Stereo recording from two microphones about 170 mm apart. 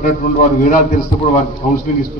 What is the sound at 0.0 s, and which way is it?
Speech, 50° left (ahead or behind).